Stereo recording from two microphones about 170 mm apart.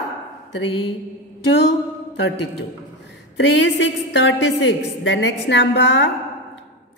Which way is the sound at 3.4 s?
90° left.